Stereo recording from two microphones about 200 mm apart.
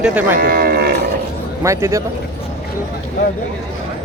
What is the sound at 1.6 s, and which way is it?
Speech, 15° right (ahead or behind).